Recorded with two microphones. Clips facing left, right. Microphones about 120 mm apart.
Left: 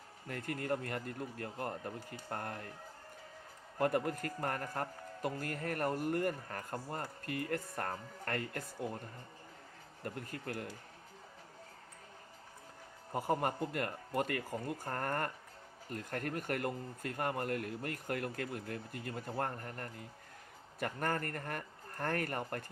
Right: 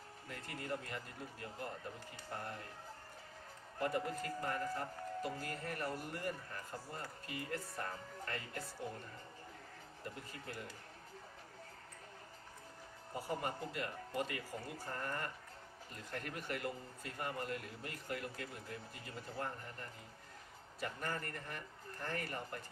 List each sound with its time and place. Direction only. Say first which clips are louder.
0.3 s speech: left 7 dB; 55° left (ahead or behind)
3.8 s speech: left 5 dB; 55° left (ahead or behind)
10.0 s speech: left 7 dB; 55° left (ahead or behind)
13.1 s speech: left 7 dB; 50° left (ahead or behind)